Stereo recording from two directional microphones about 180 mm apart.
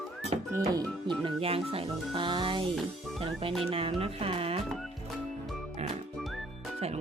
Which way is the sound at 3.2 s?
30° right (ahead or behind).